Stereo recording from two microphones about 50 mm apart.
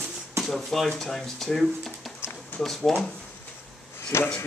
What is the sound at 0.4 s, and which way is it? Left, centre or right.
Speech, centre.